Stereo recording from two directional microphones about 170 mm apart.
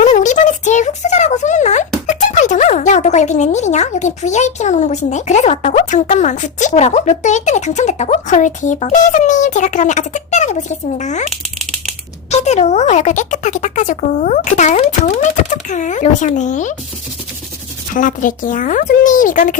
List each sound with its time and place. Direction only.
0.0 s a sound: 45° left (ahead or behind)
2.0 s speech: 45° left (ahead or behind)
12.3 s speech: 40° left (ahead or behind)
17.9 s speech: 50° left (ahead or behind)